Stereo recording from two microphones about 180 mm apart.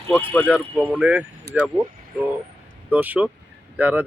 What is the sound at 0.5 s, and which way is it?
Speech, 10° right (ahead or behind).